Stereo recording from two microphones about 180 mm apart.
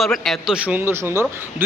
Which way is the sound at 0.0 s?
Centre (ahead or behind).